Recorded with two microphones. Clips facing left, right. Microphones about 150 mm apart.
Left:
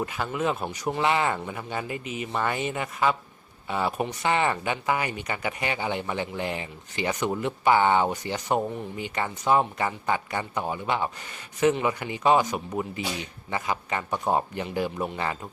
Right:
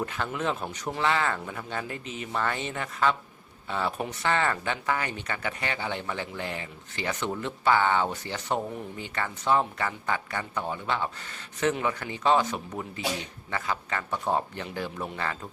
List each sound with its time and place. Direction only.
0.0 s speech: 10° left (ahead or behind)
1.5 s speech: 5° left (ahead or behind)